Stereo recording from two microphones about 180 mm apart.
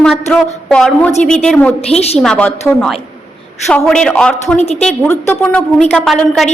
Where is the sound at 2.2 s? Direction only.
5° left (ahead or behind).